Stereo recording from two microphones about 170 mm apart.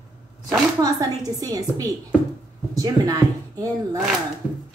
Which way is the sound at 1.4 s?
20° right (ahead or behind).